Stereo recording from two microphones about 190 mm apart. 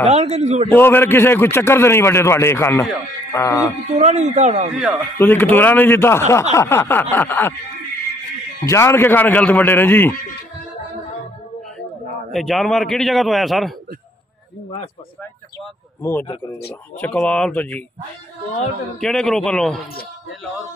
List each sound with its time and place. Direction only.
0.0 s a man's voice: 35° right (ahead or behind)
0.7 s a man's voice: 10° left (ahead or behind)
3.9 s a man's voice: 40° right (ahead or behind)
5.2 s a man's voice: 10° left (ahead or behind)
8.6 s a man's voice: 15° left (ahead or behind)
12.3 s a man's voice: centre (ahead or behind)
16.0 s a man's voice: 10° left (ahead or behind)
18.9 s a man's voice: centre (ahead or behind)